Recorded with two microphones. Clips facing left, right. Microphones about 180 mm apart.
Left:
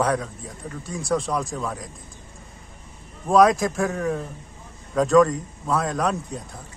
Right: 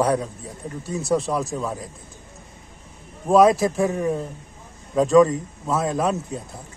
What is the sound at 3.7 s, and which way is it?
Speech, 15° right (ahead or behind).